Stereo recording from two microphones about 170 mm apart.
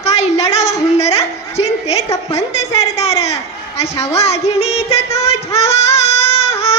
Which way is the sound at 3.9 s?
15° left (ahead or behind).